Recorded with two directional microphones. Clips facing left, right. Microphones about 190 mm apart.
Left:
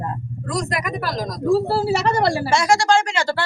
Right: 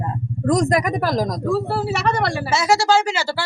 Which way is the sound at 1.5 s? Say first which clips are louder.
Left 6 dB; 30° left (ahead or behind).